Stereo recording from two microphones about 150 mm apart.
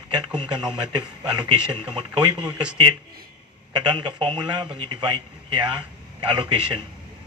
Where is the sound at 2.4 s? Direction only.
5° right (ahead or behind).